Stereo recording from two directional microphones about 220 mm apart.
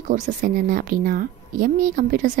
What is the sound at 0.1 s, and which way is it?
A woman's voice, 35° right (ahead or behind).